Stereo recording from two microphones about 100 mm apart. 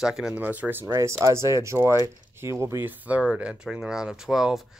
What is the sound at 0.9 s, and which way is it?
Speech, 30° right (ahead or behind).